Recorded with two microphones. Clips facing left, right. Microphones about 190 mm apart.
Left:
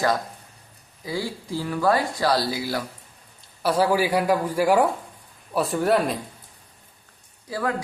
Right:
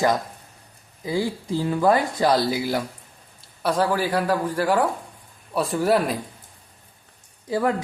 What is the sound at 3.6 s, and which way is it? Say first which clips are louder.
A woman's voice: left 1 dB; 5° left (ahead or behind).